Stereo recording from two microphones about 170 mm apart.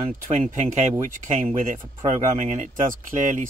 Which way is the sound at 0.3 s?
45° right (ahead or behind).